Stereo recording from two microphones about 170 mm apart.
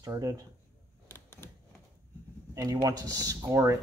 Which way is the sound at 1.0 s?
15° left (ahead or behind).